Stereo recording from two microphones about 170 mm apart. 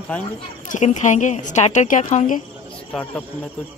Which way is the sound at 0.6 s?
45° left (ahead or behind).